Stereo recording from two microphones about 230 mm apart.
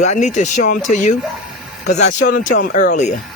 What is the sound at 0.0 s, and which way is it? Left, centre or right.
Speech, left.